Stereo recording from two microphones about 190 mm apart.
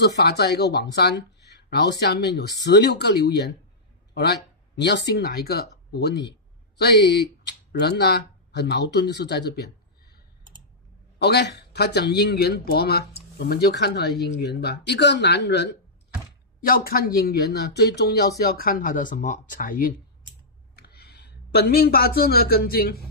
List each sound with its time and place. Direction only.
0.0 s speech: 60° left (ahead or behind)
11.1 s speech: 60° left (ahead or behind)
16.6 s speech: 50° left (ahead or behind)
20.7 s speech: 55° left (ahead or behind)